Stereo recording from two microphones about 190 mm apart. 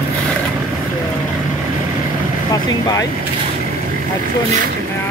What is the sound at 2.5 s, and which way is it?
Speech, 20° left (ahead or behind).